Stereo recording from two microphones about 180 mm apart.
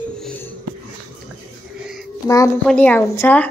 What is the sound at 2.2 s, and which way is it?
Speech, 20° left (ahead or behind).